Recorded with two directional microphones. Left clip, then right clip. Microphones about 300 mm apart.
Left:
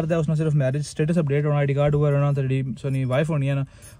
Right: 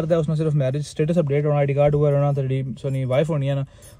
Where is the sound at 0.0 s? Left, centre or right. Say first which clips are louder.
Right 3 dB; centre.